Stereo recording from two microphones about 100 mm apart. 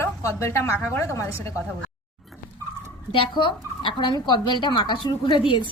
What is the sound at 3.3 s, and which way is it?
Speech, 55° left (ahead or behind).